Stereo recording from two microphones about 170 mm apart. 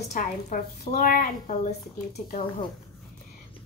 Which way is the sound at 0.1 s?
55° left (ahead or behind).